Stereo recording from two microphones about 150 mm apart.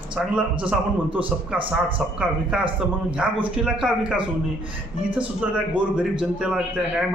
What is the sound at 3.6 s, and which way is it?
A man's voice, 5° right (ahead or behind).